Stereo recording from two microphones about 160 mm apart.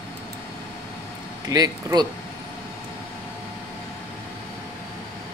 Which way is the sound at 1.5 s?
25° right (ahead or behind).